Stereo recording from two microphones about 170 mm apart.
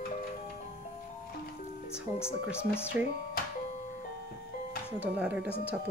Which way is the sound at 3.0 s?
10° right (ahead or behind).